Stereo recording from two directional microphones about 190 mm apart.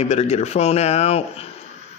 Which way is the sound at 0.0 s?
35° left (ahead or behind).